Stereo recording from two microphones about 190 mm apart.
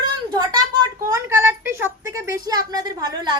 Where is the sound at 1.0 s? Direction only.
15° right (ahead or behind).